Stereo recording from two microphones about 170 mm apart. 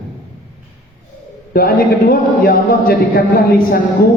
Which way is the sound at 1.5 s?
60° left (ahead or behind).